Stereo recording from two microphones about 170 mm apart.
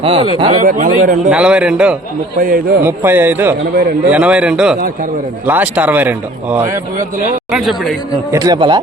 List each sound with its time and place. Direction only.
0.0 s speech: 30° right (ahead or behind)
0.6 s speech: 55° right (ahead or behind)
1.3 s a man's voice: 5° right (ahead or behind)
2.4 s a man's voice: 55° right (ahead or behind)
2.8 s a man's voice: 15° right (ahead or behind)
8.3 s speech: 25° right (ahead or behind)